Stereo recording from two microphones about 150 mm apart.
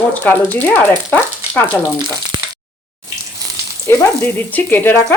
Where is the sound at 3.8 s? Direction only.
15° left (ahead or behind).